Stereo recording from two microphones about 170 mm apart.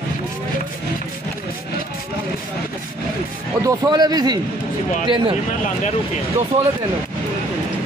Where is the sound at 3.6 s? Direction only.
25° right (ahead or behind).